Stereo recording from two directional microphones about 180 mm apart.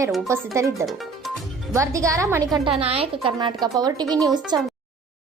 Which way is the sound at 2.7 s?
35° right (ahead or behind).